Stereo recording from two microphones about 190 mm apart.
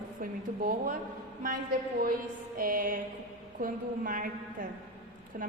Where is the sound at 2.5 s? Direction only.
45° right (ahead or behind).